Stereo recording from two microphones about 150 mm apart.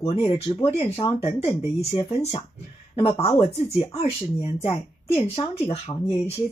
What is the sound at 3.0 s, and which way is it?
Speech, 40° left (ahead or behind).